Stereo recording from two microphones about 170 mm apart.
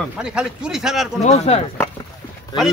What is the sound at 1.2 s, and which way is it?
Speech, 40° left (ahead or behind).